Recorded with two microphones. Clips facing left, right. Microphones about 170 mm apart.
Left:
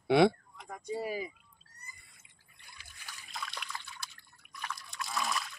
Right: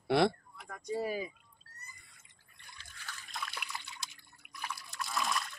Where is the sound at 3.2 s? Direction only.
Centre (ahead or behind).